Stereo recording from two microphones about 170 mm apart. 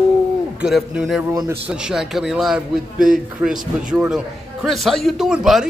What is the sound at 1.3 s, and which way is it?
Speech, 20° right (ahead or behind).